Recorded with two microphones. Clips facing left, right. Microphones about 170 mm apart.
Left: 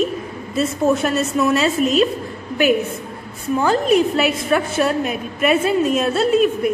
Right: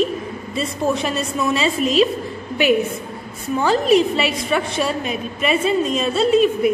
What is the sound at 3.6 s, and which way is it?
A woman's voice, centre (ahead or behind).